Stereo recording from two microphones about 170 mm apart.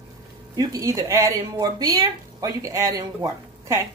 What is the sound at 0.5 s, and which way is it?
Speech, 20° right (ahead or behind).